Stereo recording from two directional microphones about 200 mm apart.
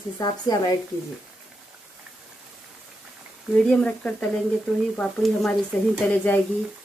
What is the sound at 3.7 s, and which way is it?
Speech, 5° left (ahead or behind).